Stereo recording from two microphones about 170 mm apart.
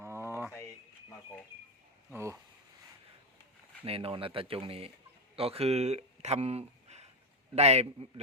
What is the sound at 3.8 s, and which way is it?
Speech, 35° right (ahead or behind).